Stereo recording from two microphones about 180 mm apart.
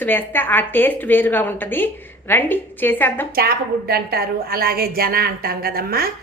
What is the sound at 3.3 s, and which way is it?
A woman's voice, 60° right (ahead or behind).